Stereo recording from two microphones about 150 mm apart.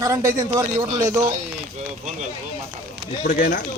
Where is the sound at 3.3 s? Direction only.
70° left (ahead or behind).